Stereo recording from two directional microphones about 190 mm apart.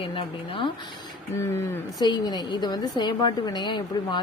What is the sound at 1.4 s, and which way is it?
Speech, 10° left (ahead or behind).